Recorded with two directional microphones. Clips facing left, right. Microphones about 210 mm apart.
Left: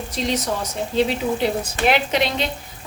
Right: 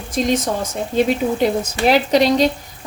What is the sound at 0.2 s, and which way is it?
Speech, 50° right (ahead or behind).